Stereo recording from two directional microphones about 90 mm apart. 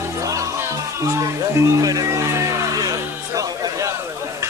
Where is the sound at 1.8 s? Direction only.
40° right (ahead or behind).